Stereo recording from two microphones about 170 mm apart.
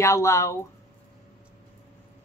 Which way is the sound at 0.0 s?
15° left (ahead or behind).